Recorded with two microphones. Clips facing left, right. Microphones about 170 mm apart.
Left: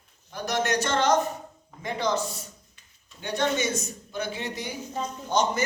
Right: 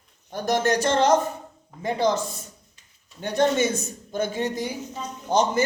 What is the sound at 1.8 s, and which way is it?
Speech, 35° right (ahead or behind).